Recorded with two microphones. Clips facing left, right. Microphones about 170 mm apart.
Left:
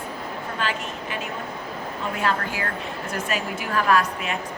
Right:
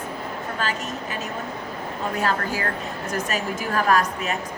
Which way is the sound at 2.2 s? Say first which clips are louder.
Even; 40° right (ahead or behind).